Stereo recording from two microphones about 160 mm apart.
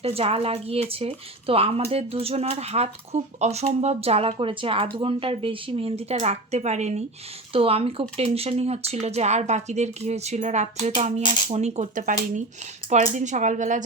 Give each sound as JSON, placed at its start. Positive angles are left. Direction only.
{"t": 0.0, "sound": "speech", "side_deg": -40}